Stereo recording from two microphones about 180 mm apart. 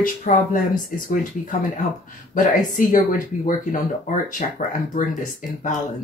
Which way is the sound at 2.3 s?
50° left (ahead or behind).